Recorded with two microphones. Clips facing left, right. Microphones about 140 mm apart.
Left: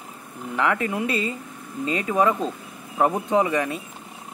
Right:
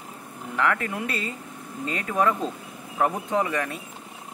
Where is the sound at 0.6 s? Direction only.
10° left (ahead or behind).